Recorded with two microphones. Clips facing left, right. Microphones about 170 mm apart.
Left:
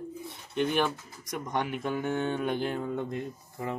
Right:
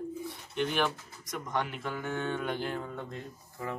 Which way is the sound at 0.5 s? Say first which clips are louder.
Left 3 dB; 15° left (ahead or behind).